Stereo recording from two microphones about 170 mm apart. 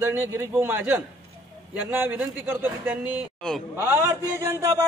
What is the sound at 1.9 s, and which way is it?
A man's voice, 10° right (ahead or behind).